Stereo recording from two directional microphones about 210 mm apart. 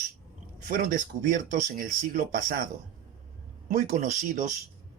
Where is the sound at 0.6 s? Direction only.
40° right (ahead or behind).